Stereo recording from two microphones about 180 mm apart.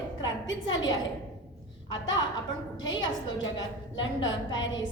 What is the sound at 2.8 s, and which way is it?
Speech, 25° left (ahead or behind).